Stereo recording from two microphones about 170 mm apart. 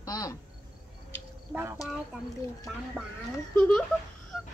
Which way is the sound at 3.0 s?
5° right (ahead or behind).